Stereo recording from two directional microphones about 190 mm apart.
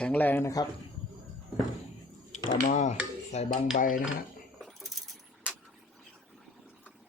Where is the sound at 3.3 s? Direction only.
35° left (ahead or behind).